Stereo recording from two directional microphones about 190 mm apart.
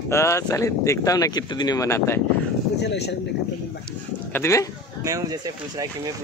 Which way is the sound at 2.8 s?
60° left (ahead or behind).